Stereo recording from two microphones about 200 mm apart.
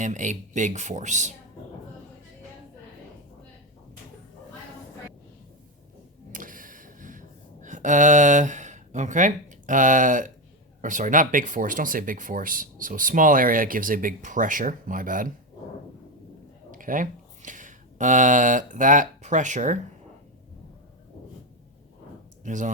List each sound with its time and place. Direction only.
0.0 s speech: 40° right (ahead or behind)
6.3 s a sound: 40° right (ahead or behind)
10.8 s speech: 40° right (ahead or behind)
16.7 s speech: 40° right (ahead or behind)
22.4 s speech: 40° right (ahead or behind)